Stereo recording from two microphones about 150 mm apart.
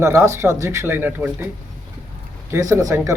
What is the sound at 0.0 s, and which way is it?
A man's voice, 20° right (ahead or behind).